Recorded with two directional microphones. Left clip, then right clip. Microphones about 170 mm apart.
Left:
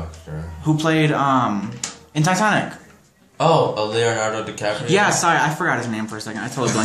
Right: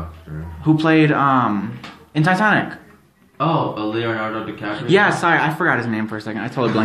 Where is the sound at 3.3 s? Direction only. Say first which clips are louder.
Left 3 dB; 65° left (ahead or behind).